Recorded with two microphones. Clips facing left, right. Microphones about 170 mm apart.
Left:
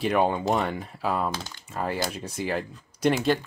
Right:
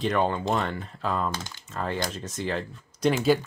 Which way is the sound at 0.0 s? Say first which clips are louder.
Left 2 dB; 10° left (ahead or behind).